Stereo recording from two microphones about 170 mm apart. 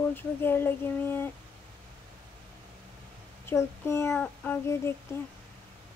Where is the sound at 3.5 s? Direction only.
15° left (ahead or behind).